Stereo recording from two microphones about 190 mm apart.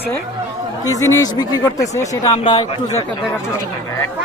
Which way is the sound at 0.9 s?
20° left (ahead or behind).